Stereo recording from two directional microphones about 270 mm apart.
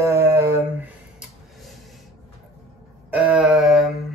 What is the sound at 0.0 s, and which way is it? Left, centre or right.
Dog, centre.